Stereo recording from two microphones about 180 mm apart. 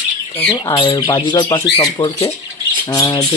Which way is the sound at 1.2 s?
25° left (ahead or behind).